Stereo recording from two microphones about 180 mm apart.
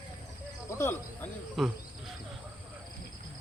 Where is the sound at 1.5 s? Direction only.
Centre (ahead or behind).